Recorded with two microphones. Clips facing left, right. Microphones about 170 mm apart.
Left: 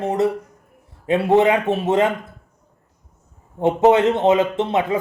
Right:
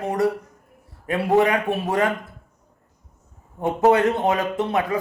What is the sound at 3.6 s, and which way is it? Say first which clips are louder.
Speech: left 3 dB; 25° left (ahead or behind).